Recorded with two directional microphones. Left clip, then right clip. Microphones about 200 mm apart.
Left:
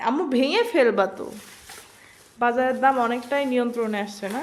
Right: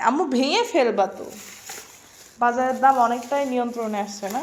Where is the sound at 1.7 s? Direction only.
25° right (ahead or behind).